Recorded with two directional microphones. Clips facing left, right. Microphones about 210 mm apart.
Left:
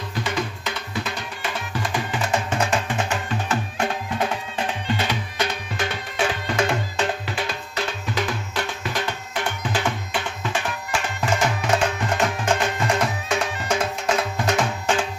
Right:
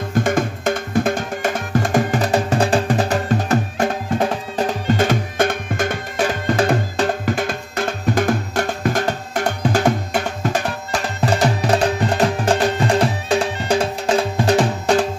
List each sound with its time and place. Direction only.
0.1 s music: 50° right (ahead or behind)